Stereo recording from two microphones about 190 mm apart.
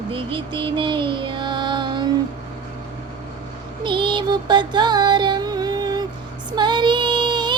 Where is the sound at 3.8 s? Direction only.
25° right (ahead or behind).